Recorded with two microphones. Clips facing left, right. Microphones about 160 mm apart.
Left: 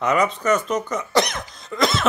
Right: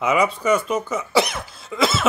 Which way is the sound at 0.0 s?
5° right (ahead or behind).